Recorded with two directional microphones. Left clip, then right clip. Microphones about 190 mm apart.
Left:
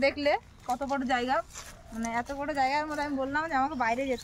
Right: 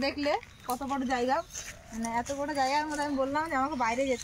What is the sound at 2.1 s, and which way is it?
Speech, 25° left (ahead or behind).